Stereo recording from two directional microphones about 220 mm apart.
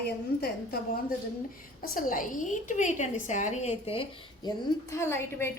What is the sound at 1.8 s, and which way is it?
A woman's voice, 40° left (ahead or behind).